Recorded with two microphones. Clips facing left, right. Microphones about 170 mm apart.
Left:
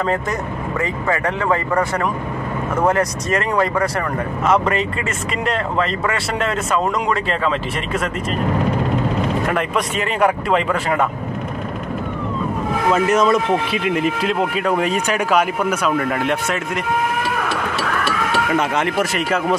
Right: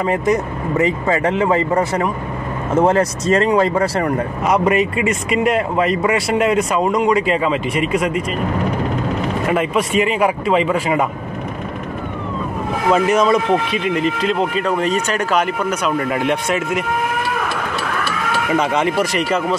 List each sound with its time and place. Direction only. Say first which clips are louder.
0.0 s speech: right 4 dB; 15° right (ahead or behind)
4.5 s speech: right 2 dB; 10° right (ahead or behind)
9.5 s speech: right 3 dB; 5° right (ahead or behind)
12.9 s speech: right 2 dB; centre (ahead or behind)
18.5 s speech: right 6 dB; centre (ahead or behind)